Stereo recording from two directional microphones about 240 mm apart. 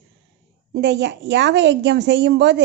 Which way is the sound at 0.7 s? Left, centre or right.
Right.